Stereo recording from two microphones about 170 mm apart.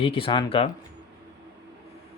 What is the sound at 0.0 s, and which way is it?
Speech, 30° left (ahead or behind).